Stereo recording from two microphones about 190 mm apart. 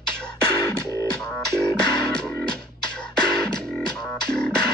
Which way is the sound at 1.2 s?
5° left (ahead or behind).